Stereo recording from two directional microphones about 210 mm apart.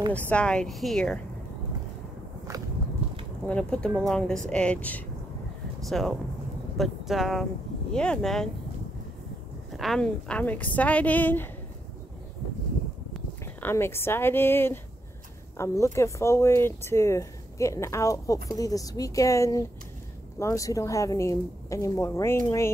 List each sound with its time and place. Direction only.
0.1 s speech: 5° left (ahead or behind)
3.4 s speech: 5° left (ahead or behind)
9.7 s speech: centre (ahead or behind)
13.4 s speech: 10° left (ahead or behind)